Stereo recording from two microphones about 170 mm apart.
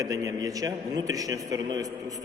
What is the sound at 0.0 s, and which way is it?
A man's voice, 20° right (ahead or behind).